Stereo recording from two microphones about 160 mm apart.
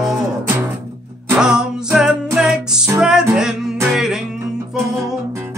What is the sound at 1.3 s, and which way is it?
Music, 5° right (ahead or behind).